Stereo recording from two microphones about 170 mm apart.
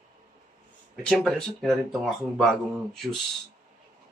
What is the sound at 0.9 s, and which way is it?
Speech, 5° left (ahead or behind).